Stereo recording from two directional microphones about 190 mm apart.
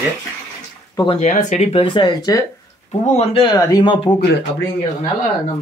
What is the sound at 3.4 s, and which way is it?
Speech, 20° left (ahead or behind).